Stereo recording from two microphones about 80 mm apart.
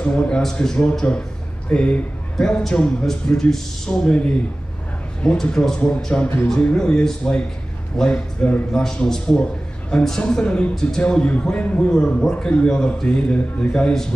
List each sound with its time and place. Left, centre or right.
0.0 s a man's voice: centre
8.7 s a man's voice: centre